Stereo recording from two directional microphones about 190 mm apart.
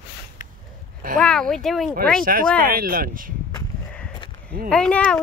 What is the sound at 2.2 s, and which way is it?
Speech, 45° right (ahead or behind).